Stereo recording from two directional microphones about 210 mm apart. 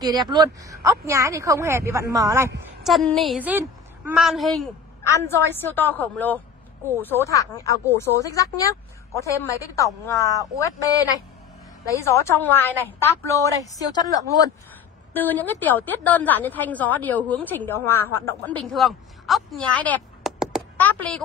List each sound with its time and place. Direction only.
0.0 s speech: 20° right (ahead or behind)
2.8 s a woman's voice: centre (ahead or behind)
5.0 s a woman's voice: 15° left (ahead or behind)